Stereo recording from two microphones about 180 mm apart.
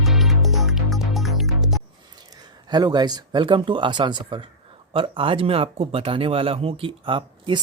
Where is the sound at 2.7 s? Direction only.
25° right (ahead or behind).